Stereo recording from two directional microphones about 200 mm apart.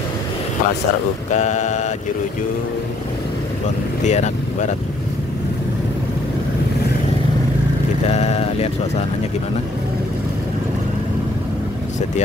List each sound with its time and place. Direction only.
1.3 s speech: 35° left (ahead or behind)
4.0 s speech: 35° left (ahead or behind)
8.1 s vehicle: 30° left (ahead or behind)